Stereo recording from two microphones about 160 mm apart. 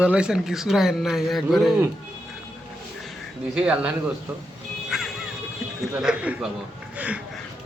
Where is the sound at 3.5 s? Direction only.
5° right (ahead or behind).